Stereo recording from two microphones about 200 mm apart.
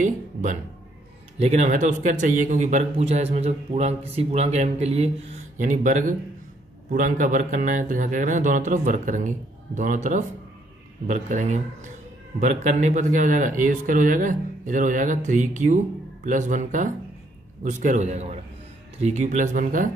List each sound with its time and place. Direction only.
0.0 s a man's voice: 40° right (ahead or behind)